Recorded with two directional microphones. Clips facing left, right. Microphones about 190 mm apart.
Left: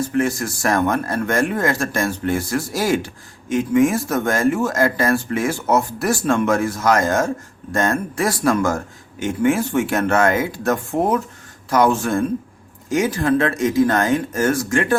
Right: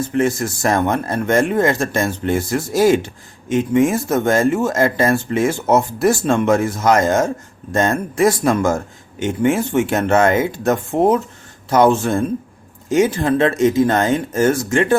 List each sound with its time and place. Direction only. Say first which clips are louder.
0.1 s speech: right 2 dB; 25° right (ahead or behind)